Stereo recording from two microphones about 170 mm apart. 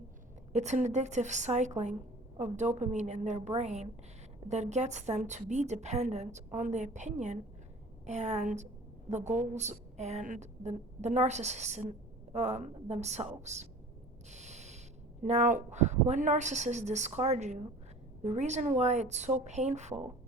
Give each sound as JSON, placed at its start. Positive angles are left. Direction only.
{"t": 0.5, "sound": "a woman's voice", "side_deg": -40}
{"t": 14.3, "sound": "mechanisms", "side_deg": -40}
{"t": 15.2, "sound": "a woman's voice", "side_deg": -45}